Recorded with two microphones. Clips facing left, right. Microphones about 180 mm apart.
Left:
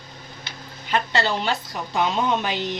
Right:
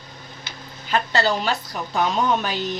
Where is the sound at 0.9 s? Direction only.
25° left (ahead or behind).